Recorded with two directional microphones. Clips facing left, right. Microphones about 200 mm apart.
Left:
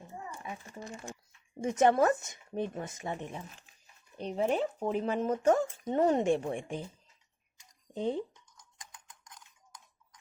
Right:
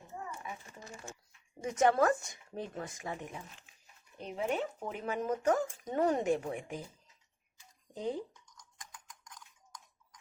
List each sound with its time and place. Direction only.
1.8 s speech: 20° left (ahead or behind)
7.9 s speech: 25° left (ahead or behind)
8.8 s typing: 25° left (ahead or behind)